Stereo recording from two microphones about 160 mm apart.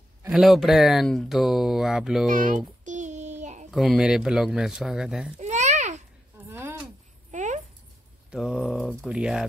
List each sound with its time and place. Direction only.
0.3 s speech: centre (ahead or behind)
2.2 s music: 55° right (ahead or behind)
3.7 s speech: centre (ahead or behind)
5.4 s babbling: 45° right (ahead or behind)
6.5 s a sound: 15° right (ahead or behind)
7.2 s a sound: 50° right (ahead or behind)
8.3 s speech: 5° right (ahead or behind)